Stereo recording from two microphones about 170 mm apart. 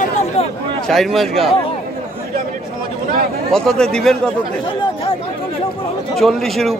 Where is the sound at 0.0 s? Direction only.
40° left (ahead or behind).